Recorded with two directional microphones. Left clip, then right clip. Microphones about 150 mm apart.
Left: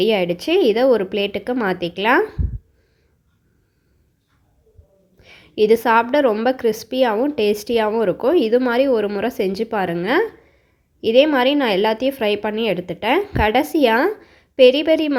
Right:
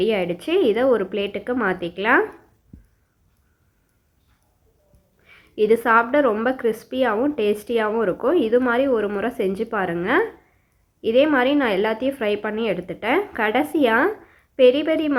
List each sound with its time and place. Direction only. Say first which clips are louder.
0.0 s a woman's voice: left 4 dB; 35° left (ahead or behind)
5.2 s a woman's voice: left 4 dB; 35° left (ahead or behind)